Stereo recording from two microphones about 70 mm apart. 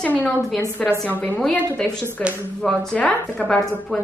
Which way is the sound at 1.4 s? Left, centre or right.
Centre.